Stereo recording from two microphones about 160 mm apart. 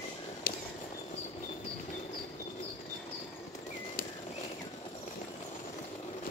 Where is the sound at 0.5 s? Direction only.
70° left (ahead or behind).